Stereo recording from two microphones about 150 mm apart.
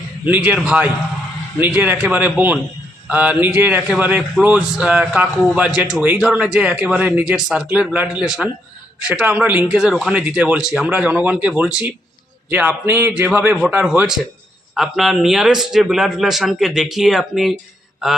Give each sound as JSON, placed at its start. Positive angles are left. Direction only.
{"t": 0.3, "sound": "a man's voice", "side_deg": -10}